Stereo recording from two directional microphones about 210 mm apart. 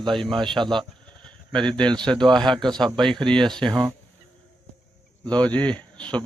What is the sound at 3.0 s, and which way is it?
Speech, centre (ahead or behind).